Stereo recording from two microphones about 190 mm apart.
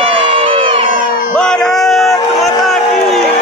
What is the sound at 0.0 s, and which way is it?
Crowd, 30° right (ahead or behind).